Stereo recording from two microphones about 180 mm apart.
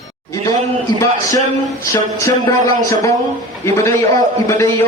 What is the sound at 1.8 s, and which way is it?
A man's voice, 15° left (ahead or behind).